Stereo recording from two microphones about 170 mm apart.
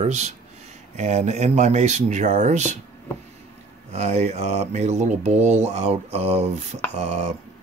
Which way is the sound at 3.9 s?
40° right (ahead or behind).